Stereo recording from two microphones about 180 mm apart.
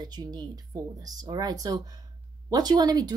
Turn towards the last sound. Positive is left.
turn(degrees=-20)  # may be behind; listen again after turning